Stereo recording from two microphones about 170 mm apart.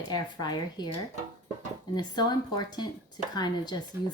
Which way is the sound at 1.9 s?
25° left (ahead or behind).